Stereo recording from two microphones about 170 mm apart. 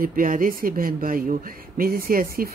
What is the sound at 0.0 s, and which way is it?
Speech, 55° right (ahead or behind).